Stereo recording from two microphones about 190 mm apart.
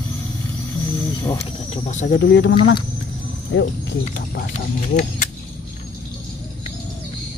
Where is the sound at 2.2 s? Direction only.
65° left (ahead or behind).